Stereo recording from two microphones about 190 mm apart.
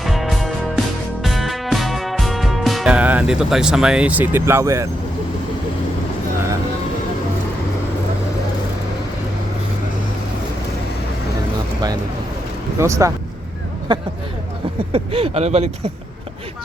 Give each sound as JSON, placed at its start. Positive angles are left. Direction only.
{"t": 0.0, "sound": "music", "side_deg": 0}
{"t": 12.8, "sound": "speech", "side_deg": -15}
{"t": 13.9, "sound": "a sound", "side_deg": -25}
{"t": 14.9, "sound": "speech", "side_deg": -30}